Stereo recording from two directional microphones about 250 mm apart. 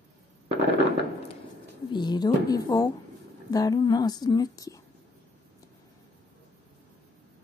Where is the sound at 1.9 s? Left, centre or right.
Centre.